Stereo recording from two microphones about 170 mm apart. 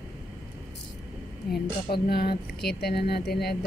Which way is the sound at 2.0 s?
65° left (ahead or behind).